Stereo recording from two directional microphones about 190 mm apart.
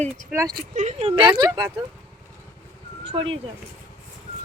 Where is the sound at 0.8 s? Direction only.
35° right (ahead or behind).